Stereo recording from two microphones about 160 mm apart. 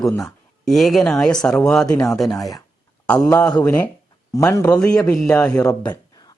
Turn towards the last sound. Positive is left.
turn(degrees=5)  # may be behind; listen again after turning